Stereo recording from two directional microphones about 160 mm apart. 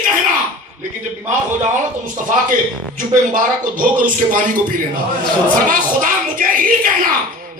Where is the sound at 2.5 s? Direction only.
55° right (ahead or behind).